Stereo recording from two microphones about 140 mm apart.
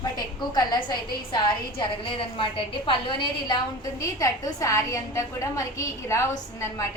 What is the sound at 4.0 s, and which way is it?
A woman's voice, 25° left (ahead or behind).